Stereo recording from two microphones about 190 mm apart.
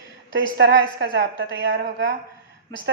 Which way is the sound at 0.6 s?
60° right (ahead or behind).